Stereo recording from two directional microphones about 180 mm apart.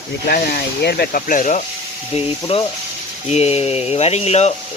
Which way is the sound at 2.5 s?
35° left (ahead or behind).